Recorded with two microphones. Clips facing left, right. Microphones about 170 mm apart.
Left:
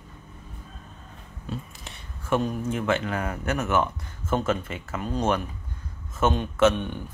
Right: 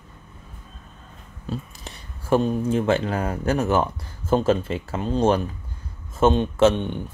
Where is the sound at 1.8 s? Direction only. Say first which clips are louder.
Right 2 dB; 30° right (ahead or behind).